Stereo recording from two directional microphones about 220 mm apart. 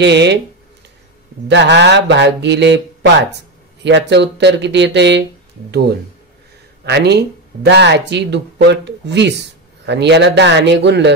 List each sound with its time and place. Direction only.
0.0 s speech: 50° right (ahead or behind)
1.5 s speech: 50° right (ahead or behind)
6.8 s speech: 50° right (ahead or behind)